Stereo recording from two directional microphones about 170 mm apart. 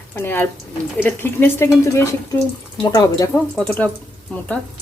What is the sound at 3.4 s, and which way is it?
A woman's voice, 5° left (ahead or behind).